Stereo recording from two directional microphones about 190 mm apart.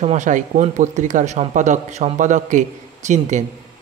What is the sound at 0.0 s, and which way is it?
Speech, 40° right (ahead or behind).